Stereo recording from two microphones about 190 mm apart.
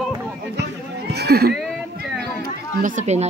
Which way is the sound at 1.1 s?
60° right (ahead or behind).